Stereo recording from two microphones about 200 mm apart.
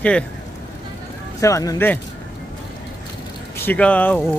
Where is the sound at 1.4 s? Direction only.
15° left (ahead or behind).